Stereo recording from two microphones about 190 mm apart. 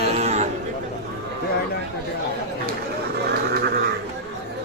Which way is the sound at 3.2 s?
55° right (ahead or behind).